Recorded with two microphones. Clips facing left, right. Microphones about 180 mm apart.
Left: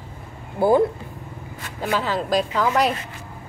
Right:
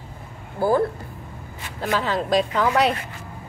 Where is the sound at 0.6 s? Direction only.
20° left (ahead or behind).